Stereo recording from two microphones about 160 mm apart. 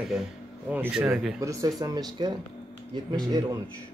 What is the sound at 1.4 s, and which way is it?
Speech, 20° right (ahead or behind).